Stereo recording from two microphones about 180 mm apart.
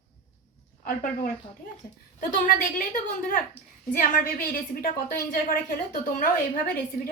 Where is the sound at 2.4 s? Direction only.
50° left (ahead or behind).